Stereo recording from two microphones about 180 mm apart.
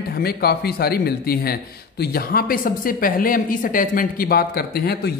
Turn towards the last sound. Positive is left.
turn(degrees=55)  # may be behind; listen again after turning